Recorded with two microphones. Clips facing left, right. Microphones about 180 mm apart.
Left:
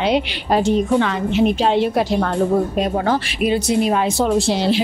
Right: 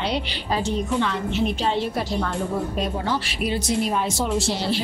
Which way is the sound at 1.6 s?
75° left (ahead or behind).